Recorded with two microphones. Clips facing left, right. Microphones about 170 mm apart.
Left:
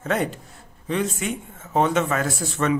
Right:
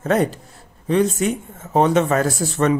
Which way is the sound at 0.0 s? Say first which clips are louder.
Right 6 dB; 40° right (ahead or behind).